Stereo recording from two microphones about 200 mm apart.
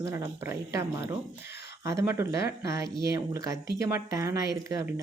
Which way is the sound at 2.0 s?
15° right (ahead or behind).